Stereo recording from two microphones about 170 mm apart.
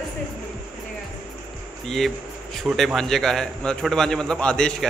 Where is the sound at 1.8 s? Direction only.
Centre (ahead or behind).